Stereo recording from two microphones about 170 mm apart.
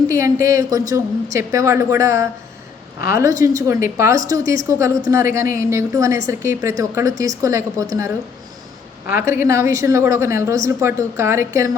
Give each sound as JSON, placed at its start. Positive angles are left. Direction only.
{"t": 0.1, "sound": "a woman's voice", "side_deg": -15}
{"t": 9.2, "sound": "speech", "side_deg": -15}